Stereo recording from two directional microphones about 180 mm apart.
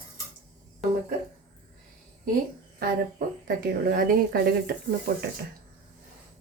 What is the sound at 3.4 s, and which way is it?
Speech, 55° right (ahead or behind).